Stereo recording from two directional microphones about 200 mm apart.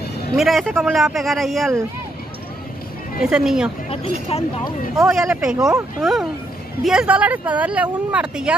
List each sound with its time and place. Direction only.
0.4 s speech: centre (ahead or behind)
3.2 s speech: 5° right (ahead or behind)
3.9 s speech: 30° left (ahead or behind)
4.9 s speech: centre (ahead or behind)
6.8 s speech: 5° right (ahead or behind)